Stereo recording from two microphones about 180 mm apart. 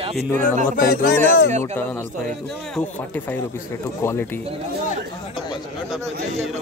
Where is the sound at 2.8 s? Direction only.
10° left (ahead or behind).